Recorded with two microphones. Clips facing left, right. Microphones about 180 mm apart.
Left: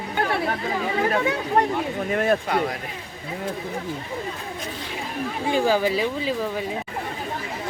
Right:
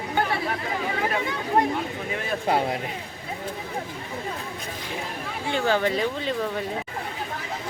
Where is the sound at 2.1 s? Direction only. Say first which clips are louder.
Left 9 dB; 55° left (ahead or behind).